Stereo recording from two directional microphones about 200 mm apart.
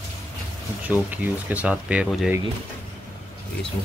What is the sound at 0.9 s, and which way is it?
Speech, 5° right (ahead or behind).